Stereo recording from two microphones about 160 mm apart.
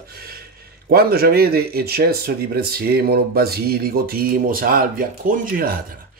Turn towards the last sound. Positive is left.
turn(degrees=-60)  # may be behind; listen again after turning